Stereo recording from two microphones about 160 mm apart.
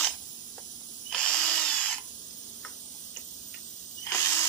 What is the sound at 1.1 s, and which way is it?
Drill, 5° left (ahead or behind).